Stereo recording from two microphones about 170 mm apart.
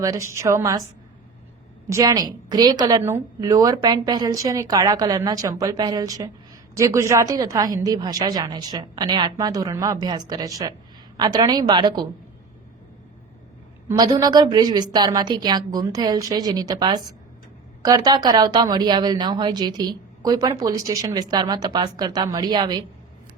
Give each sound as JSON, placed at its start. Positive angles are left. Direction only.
{"t": 0.0, "sound": "speech", "side_deg": -15}
{"t": 1.9, "sound": "speech", "side_deg": -20}
{"t": 13.8, "sound": "speech", "side_deg": -25}